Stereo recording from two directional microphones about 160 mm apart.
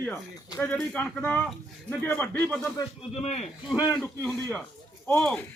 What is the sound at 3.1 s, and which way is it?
Speech, 40° left (ahead or behind).